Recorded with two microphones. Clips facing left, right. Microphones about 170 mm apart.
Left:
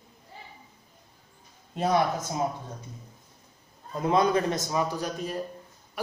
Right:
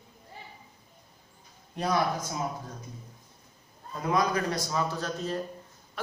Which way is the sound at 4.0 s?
25° left (ahead or behind).